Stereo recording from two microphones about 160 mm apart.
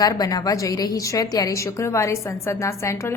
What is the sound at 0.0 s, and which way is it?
A woman's voice, 25° left (ahead or behind).